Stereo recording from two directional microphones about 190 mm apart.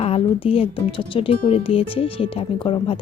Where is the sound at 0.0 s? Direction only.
30° left (ahead or behind).